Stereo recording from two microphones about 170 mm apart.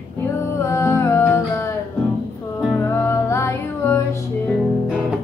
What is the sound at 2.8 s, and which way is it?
Music, 15° left (ahead or behind).